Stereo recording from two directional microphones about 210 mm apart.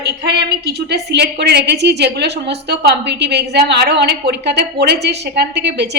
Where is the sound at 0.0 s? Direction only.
50° right (ahead or behind).